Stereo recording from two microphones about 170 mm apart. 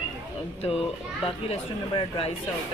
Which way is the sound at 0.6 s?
35° left (ahead or behind).